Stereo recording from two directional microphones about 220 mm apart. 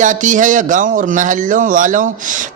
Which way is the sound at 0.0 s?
35° right (ahead or behind).